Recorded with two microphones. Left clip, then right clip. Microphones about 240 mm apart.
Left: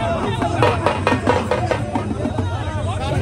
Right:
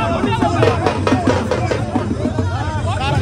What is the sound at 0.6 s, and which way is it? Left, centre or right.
Music, left.